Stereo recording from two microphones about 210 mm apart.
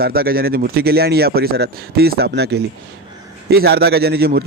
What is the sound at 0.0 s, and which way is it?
Speech, 45° right (ahead or behind).